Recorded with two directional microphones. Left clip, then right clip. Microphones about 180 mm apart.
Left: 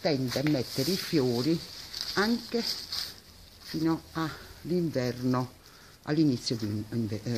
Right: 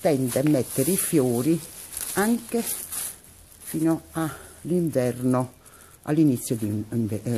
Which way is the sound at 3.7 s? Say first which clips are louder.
Right 5 dB; 20° right (ahead or behind).